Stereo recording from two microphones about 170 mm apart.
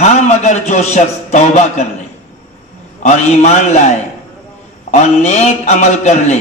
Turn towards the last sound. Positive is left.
turn(degrees=45)  # may be behind; listen again after turning